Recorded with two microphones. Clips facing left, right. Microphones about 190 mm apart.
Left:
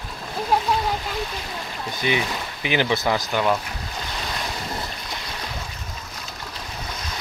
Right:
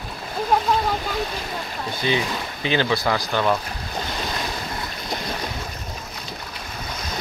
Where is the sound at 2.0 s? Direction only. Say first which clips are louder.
Right 1 dB; 15° left (ahead or behind).